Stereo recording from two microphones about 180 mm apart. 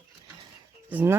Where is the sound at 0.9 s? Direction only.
10° right (ahead or behind).